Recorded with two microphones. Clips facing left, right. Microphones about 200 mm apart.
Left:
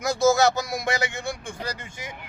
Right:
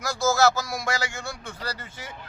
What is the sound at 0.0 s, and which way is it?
Speech, 20° left (ahead or behind).